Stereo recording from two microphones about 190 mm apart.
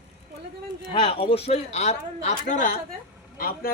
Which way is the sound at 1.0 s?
30° left (ahead or behind).